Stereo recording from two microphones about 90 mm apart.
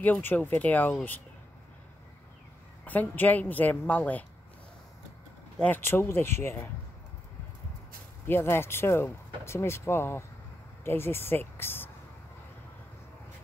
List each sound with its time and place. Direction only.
0.0 s speech: 20° left (ahead or behind)
2.8 s a woman's voice: 20° left (ahead or behind)
5.6 s speech: 25° left (ahead or behind)
8.3 s speech: 25° left (ahead or behind)